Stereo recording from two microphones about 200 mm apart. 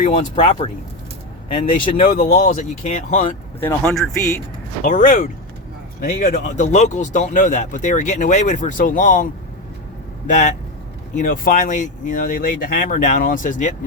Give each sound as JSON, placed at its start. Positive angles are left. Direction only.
{"t": 0.1, "sound": "speech", "side_deg": 35}
{"t": 2.0, "sound": "speech", "side_deg": 50}
{"t": 3.8, "sound": "speech", "side_deg": 0}
{"t": 4.8, "sound": "speech", "side_deg": 40}
{"t": 10.2, "sound": "speech", "side_deg": 40}